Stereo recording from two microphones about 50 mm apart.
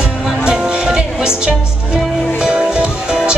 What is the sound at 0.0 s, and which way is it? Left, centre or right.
Music, centre.